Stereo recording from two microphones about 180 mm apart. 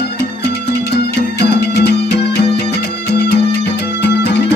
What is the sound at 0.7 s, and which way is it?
Music, 65° left (ahead or behind).